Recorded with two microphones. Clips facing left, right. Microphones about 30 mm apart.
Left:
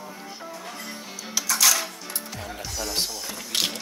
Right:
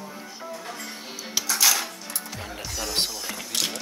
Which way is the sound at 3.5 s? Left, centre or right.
Left.